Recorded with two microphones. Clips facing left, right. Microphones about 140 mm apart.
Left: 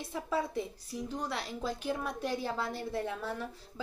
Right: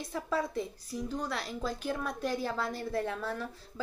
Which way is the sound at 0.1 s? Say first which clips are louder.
Right 1 dB; 15° left (ahead or behind).